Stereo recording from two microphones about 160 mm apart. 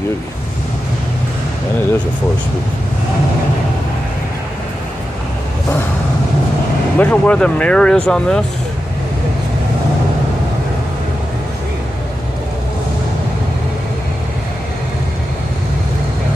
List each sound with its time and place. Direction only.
7.0 s speech: 10° left (ahead or behind)